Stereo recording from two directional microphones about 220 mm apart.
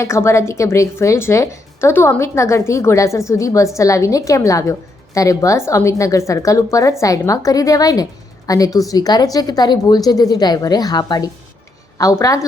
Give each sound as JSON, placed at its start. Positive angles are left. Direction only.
{"t": 0.0, "sound": "a woman's voice", "side_deg": 10}